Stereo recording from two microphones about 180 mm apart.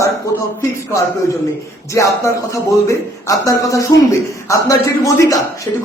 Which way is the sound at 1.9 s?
15° left (ahead or behind).